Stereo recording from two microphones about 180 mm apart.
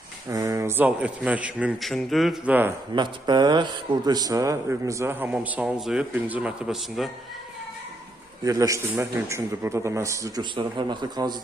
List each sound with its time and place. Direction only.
0.3 s speech: 20° right (ahead or behind)
2.9 s speech: 25° right (ahead or behind); by 7.1 s centre (ahead or behind)
8.4 s speech: 20° right (ahead or behind)